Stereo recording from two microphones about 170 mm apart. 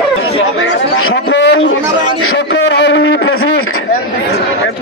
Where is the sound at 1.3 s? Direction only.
90° left.